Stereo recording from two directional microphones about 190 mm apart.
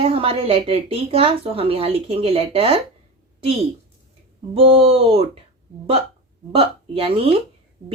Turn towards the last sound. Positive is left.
turn(degrees=-30)  # may be behind; listen again after turning